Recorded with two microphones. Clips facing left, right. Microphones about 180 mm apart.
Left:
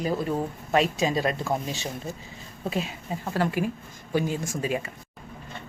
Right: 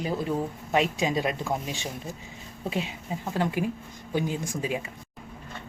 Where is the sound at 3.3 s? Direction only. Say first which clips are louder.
Left 1 dB; 15° right (ahead or behind).